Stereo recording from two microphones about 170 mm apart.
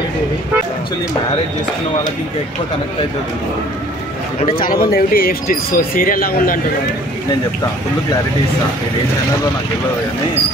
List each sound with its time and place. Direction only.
4.6 s speech: 60° left (ahead or behind)